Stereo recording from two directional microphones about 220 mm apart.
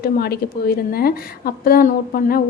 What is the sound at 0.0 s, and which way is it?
A woman's voice, 45° left (ahead or behind).